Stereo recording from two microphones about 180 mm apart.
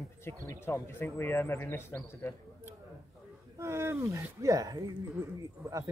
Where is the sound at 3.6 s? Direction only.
15° right (ahead or behind).